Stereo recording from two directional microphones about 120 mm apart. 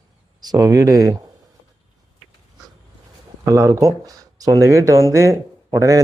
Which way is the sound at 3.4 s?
25° right (ahead or behind).